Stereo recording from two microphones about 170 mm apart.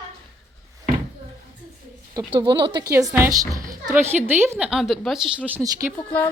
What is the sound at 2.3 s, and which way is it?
A woman's voice, 25° right (ahead or behind).